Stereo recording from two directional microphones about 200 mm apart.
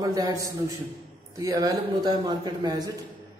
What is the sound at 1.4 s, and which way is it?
A man's voice, 15° right (ahead or behind).